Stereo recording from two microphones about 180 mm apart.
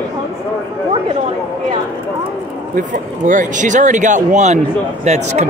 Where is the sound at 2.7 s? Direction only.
45° right (ahead or behind).